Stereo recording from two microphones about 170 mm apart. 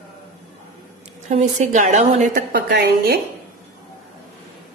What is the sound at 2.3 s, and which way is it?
Speech, 65° right (ahead or behind).